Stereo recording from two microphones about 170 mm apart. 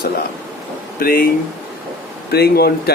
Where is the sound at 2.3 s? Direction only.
70° left (ahead or behind).